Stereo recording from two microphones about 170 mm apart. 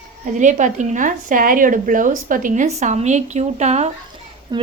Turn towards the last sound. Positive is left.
turn(degrees=-25)  # may be behind; listen again after turning